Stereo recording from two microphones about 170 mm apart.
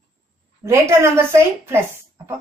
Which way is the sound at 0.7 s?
15° right (ahead or behind).